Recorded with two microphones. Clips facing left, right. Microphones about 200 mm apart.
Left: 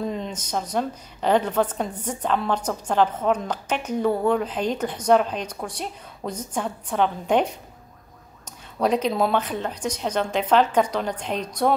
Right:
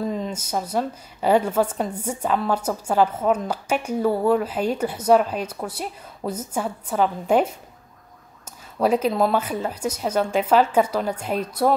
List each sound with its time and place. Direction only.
0.0 s a woman's voice: centre (ahead or behind)